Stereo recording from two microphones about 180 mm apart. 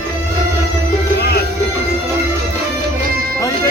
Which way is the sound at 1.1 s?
65° left (ahead or behind).